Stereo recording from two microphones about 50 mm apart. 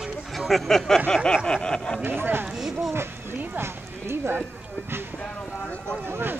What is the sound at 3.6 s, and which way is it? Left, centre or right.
Clip-clop, right.